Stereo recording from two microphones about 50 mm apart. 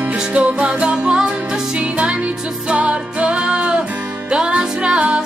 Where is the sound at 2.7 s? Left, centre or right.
Right.